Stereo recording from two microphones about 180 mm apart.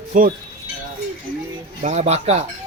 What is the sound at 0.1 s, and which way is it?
Speech, 45° right (ahead or behind).